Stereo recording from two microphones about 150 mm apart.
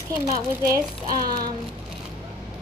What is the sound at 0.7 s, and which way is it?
Speech, 25° right (ahead or behind).